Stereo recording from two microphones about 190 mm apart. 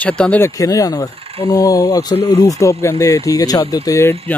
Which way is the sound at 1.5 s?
15° left (ahead or behind).